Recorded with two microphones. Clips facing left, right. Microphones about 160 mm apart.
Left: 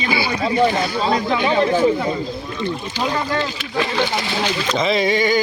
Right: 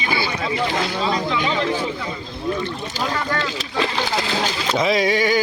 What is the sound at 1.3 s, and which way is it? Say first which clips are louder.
Speech: left 5 dB; 50° left (ahead or behind).